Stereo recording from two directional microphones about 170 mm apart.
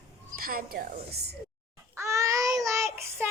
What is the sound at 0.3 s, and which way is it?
A woman's voice, 60° right (ahead or behind).